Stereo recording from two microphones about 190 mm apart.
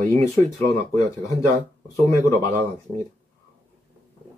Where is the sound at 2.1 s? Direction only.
15° left (ahead or behind).